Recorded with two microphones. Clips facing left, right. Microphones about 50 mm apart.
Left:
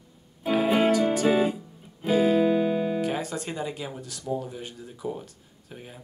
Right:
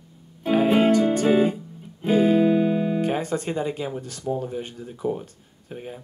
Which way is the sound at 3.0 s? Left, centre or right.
Right.